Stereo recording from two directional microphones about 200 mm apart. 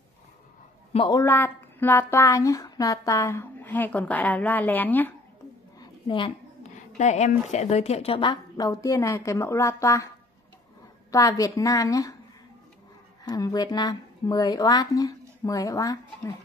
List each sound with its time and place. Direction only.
0.9 s a woman's voice: 25° left (ahead or behind)
1.2 s speech: 10° left (ahead or behind)
5.8 s a sound: 25° left (ahead or behind)
7.0 s a woman's voice: 35° left (ahead or behind); by 10.0 s 15° left (ahead or behind)
11.1 s speech: 15° left (ahead or behind)
13.2 s speech: 20° left (ahead or behind)